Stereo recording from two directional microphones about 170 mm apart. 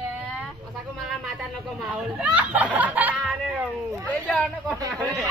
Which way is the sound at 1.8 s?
5° right (ahead or behind).